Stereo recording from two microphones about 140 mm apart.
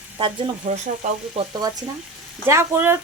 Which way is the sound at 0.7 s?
65° right (ahead or behind).